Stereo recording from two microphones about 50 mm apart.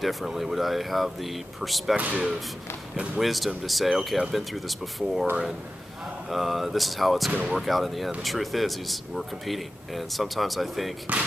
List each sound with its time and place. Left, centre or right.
0.0 s speech: centre
2.0 s speech: right
3.2 s speech: centre
6.3 s speech: centre
11.1 s speech: right